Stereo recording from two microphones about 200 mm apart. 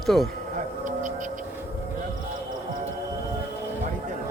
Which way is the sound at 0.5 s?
40° right (ahead or behind).